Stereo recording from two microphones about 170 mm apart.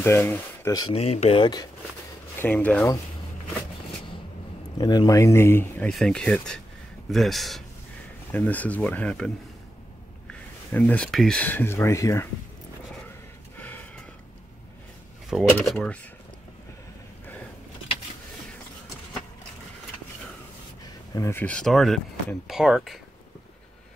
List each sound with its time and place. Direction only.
0.0 s speech: 10° left (ahead or behind)
0.7 s speech: 30° left (ahead or behind)
2.3 s speech: 10° left (ahead or behind)
4.7 s speech: 25° left (ahead or behind)
5.9 s speech: centre (ahead or behind)
10.7 s speech: 10° left (ahead or behind)
13.6 s gasp: 10° left (ahead or behind)
15.6 s speech: centre (ahead or behind)
20.8 s speech: 20° left (ahead or behind); by 22.9 s 5° right (ahead or behind)